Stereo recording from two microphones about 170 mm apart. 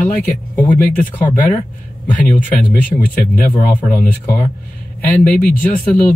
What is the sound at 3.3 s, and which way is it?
Speech, 10° left (ahead or behind).